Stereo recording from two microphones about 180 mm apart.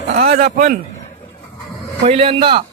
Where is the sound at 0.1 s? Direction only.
55° right (ahead or behind).